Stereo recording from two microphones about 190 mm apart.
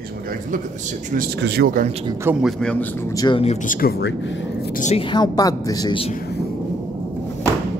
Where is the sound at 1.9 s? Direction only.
25° right (ahead or behind).